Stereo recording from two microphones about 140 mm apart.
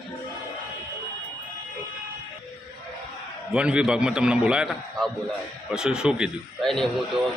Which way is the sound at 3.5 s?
5° right (ahead or behind).